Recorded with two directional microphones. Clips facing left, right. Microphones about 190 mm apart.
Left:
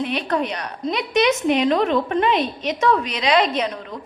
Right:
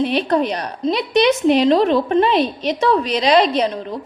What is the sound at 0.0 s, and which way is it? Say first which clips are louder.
A woman's voice: right 5 dB; 35° right (ahead or behind).